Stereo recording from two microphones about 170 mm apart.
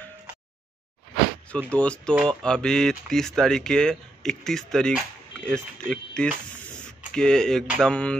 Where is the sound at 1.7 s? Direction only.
5° left (ahead or behind).